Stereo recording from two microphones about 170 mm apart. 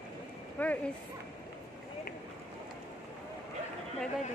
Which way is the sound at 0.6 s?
10° left (ahead or behind).